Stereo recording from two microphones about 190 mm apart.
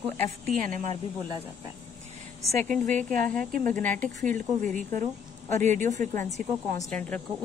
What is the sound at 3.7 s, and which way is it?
Speech, 10° left (ahead or behind).